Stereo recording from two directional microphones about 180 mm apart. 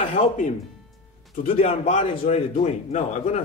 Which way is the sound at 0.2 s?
50° left (ahead or behind).